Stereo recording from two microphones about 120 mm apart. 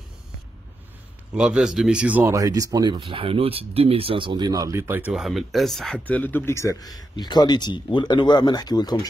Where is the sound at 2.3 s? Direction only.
30° right (ahead or behind).